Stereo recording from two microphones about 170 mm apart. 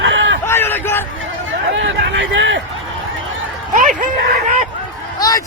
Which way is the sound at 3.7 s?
50° right (ahead or behind).